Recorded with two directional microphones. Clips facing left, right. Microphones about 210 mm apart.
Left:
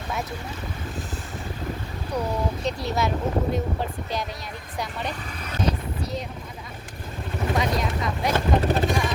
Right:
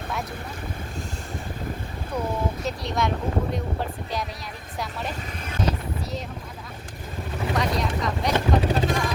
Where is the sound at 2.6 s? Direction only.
5° left (ahead or behind).